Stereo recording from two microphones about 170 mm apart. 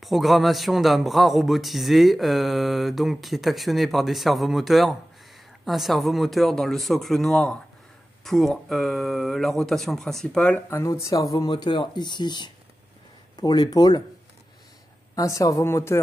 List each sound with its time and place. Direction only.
0.0 s a man's voice: centre (ahead or behind); by 14.0 s 25° left (ahead or behind)
15.1 s speech: 20° left (ahead or behind)